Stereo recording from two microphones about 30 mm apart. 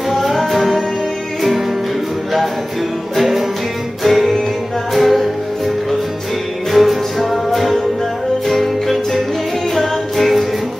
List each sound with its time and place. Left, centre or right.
0.1 s music: centre
3.2 s music: centre
6.7 s music: centre